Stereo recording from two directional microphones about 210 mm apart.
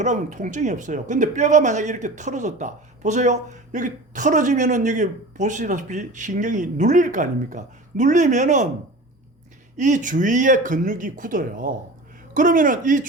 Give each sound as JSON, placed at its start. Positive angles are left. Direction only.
{"t": 0.0, "sound": "speech", "side_deg": -35}
{"t": 9.7, "sound": "speech", "side_deg": -35}